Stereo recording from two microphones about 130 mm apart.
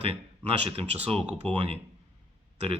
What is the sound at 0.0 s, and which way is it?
Speech, 50° right (ahead or behind).